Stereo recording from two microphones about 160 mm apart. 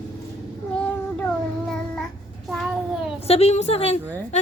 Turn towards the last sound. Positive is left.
turn(degrees=45)  # may be behind; listen again after turning